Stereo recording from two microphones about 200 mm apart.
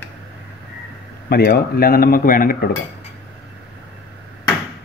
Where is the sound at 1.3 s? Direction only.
50° left (ahead or behind).